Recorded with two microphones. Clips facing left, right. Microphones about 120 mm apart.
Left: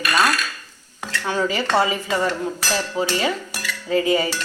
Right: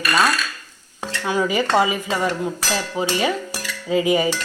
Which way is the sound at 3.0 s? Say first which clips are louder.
Right 1 dB; 20° right (ahead or behind).